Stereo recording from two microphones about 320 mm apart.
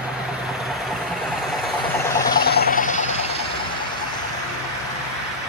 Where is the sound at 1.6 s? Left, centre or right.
Centre.